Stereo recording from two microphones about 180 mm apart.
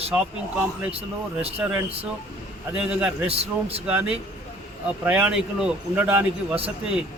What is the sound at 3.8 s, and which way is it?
A man's voice, 10° right (ahead or behind).